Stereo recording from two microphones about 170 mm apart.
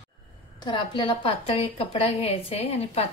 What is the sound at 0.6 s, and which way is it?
A woman's voice, 30° left (ahead or behind).